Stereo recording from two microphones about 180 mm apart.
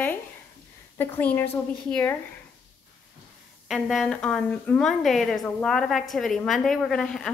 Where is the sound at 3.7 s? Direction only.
Centre (ahead or behind).